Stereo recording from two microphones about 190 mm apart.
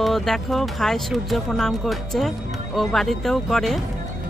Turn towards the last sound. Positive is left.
turn(degrees=0)  # may be behind; listen again after turning